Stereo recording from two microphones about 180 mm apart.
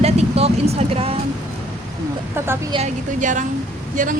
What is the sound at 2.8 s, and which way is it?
Speech, 45° right (ahead or behind).